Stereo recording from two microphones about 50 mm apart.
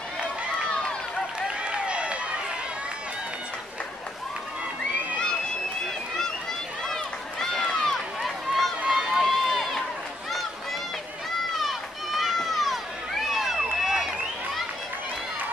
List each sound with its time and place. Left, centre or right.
1.6 s a sound: right
6.9 s run: centre
11.6 s run: centre